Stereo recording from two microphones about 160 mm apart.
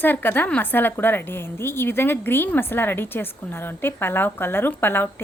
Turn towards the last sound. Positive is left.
turn(degrees=15)  # may be behind; listen again after turning